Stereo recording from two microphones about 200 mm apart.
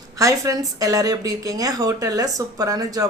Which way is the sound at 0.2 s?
15° right (ahead or behind).